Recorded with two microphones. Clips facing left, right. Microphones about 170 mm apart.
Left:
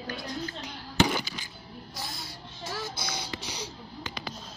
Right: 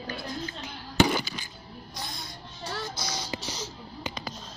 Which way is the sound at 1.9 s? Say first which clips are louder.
Right 1 dB; 5° left (ahead or behind).